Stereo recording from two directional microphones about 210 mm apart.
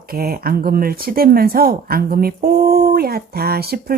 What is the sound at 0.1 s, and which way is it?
Speech, 45° right (ahead or behind).